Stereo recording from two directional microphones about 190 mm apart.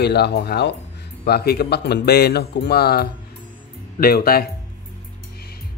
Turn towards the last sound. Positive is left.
turn(degrees=50)  # may be behind; listen again after turning